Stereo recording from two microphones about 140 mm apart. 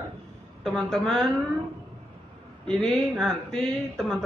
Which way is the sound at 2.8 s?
Centre (ahead or behind).